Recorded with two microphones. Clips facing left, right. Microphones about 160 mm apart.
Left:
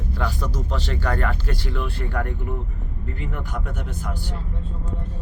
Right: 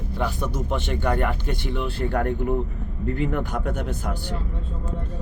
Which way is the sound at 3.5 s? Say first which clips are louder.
Right 4 dB; 65° right (ahead or behind).